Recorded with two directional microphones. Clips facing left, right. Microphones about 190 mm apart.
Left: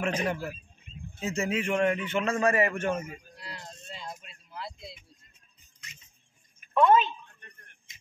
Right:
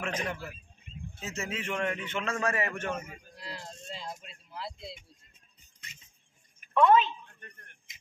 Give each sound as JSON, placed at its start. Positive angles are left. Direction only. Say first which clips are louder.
{"t": 0.0, "sound": "a man's voice", "louder": "left 5 dB", "side_deg": 10}
{"t": 3.4, "sound": "music", "louder": "right 3 dB", "side_deg": -30}
{"t": 4.6, "sound": "speech", "louder": "right 1 dB", "side_deg": -25}
{"t": 6.7, "sound": "a sound", "louder": "left 1 dB", "side_deg": 5}